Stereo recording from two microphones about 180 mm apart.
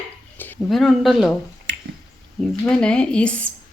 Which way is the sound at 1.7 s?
75° right (ahead or behind).